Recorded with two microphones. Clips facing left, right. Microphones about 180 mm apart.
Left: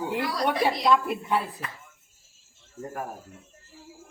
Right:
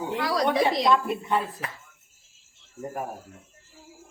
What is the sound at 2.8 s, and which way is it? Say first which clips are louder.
Speech: right 2 dB; 15° right (ahead or behind).